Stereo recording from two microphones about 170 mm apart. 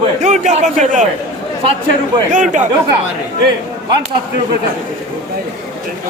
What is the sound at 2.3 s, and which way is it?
Speech, 45° right (ahead or behind).